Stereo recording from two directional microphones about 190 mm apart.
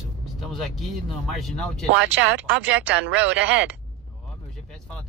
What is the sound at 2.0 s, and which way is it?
Speech, 70° right (ahead or behind).